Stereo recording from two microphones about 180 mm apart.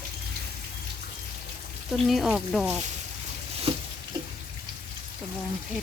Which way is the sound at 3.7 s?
30° right (ahead or behind).